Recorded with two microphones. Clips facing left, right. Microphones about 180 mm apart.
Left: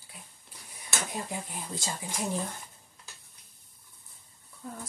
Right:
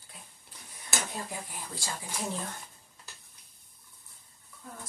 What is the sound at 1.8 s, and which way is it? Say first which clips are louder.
Speech: left 1 dB; 20° left (ahead or behind).